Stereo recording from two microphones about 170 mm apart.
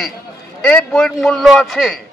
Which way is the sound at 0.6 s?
5° left (ahead or behind).